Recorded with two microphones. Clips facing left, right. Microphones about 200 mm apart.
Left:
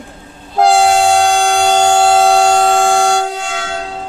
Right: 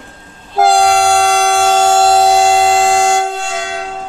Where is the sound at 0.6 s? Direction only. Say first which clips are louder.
Even; centre (ahead or behind).